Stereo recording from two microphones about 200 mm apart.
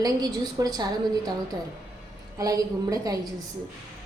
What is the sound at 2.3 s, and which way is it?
Speech, 15° right (ahead or behind).